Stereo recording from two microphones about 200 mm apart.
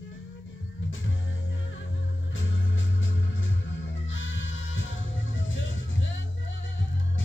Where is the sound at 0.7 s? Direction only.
75° left (ahead or behind).